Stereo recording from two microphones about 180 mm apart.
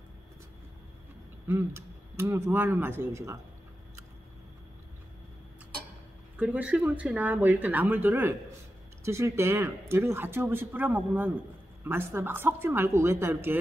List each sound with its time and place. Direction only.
1.5 s speech: 15° right (ahead or behind)
6.3 s speech: 10° right (ahead or behind)